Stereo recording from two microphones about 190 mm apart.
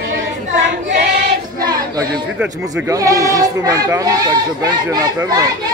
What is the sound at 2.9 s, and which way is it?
A child's voice, 15° right (ahead or behind).